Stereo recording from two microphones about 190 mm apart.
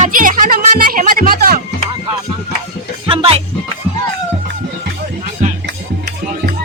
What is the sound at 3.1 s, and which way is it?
Music, 30° right (ahead or behind).